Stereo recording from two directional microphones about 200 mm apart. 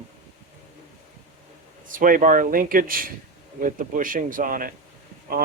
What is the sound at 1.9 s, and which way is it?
Speech, 40° right (ahead or behind).